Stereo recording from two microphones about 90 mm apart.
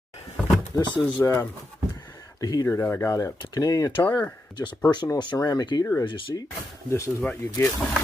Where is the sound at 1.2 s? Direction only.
25° left (ahead or behind).